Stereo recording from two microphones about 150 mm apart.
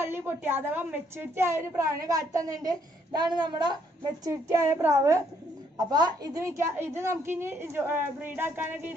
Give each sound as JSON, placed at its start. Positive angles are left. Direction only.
{"t": 0.0, "sound": "a woman's voice", "side_deg": -15}